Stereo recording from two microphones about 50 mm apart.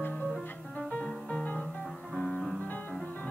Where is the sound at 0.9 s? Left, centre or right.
Left.